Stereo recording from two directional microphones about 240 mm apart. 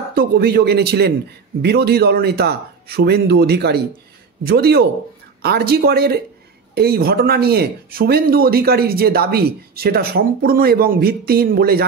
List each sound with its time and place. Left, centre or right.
0.1 s speech: right